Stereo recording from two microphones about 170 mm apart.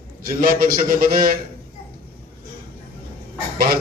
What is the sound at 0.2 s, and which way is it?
Mantra, 55° right (ahead or behind).